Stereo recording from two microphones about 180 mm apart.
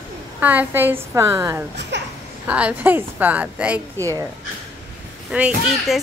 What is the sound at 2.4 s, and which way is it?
A woman's voice, 5° right (ahead or behind).